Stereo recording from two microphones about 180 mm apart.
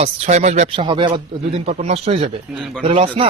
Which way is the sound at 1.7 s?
40° right (ahead or behind).